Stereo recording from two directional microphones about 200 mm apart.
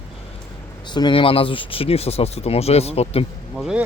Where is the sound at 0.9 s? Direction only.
25° left (ahead or behind).